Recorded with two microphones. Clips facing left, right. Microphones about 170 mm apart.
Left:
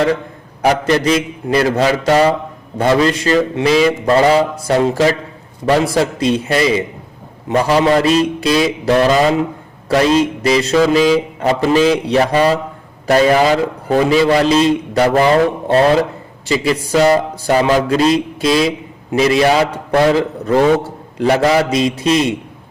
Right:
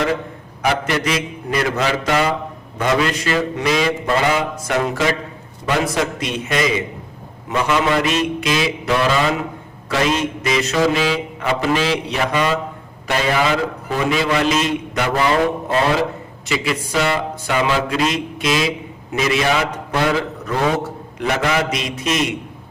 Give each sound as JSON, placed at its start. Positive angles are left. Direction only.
{"t": 0.6, "sound": "a man's voice", "side_deg": 35}
{"t": 21.2, "sound": "a man's voice", "side_deg": 35}